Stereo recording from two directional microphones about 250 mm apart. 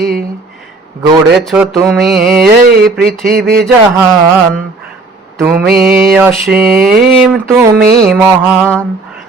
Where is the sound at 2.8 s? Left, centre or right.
Right.